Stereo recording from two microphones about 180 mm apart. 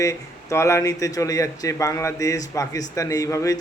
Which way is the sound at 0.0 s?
15° left (ahead or behind).